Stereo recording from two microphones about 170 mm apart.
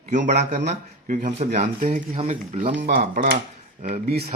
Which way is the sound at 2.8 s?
60° right (ahead or behind).